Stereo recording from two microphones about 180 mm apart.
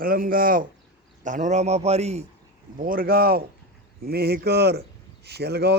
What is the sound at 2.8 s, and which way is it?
A man's voice, 50° right (ahead or behind).